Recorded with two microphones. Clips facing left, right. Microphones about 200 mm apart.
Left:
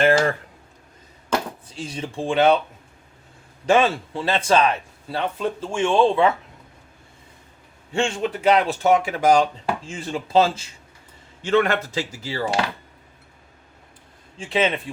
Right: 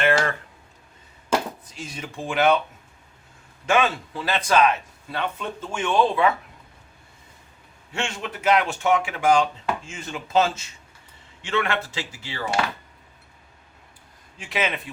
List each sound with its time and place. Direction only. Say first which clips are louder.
0.0 s a sound: left 4 dB; 35° left (ahead or behind)
1.6 s speech: left 5 dB; 30° left (ahead or behind)
3.7 s speech: left 4 dB; 30° left (ahead or behind)
7.9 s speech: left 7 dB; 30° left (ahead or behind)
14.3 s speech: left 5 dB; 30° left (ahead or behind)